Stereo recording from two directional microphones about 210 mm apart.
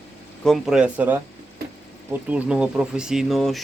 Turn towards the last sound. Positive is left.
turn(degrees=0)  # may be behind; listen again after turning